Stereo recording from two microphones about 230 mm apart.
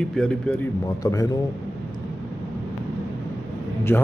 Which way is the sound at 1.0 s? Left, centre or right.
Centre.